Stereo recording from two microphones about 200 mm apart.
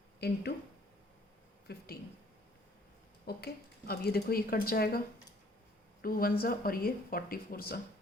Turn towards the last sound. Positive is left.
turn(degrees=45)  # may be behind; listen again after turning